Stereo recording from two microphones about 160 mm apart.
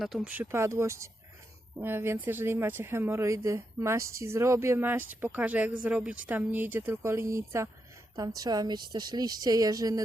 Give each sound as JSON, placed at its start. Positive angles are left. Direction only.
{"t": 0.0, "sound": "speech", "side_deg": 0}
{"t": 0.4, "sound": "a woman's voice", "side_deg": -15}